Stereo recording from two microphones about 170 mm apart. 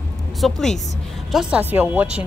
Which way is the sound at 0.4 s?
5° left (ahead or behind).